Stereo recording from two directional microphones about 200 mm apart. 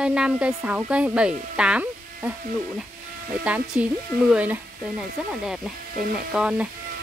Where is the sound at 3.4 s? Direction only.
5° right (ahead or behind).